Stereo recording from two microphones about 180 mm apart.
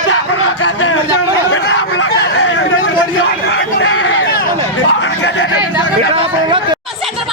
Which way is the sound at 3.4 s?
75° left (ahead or behind).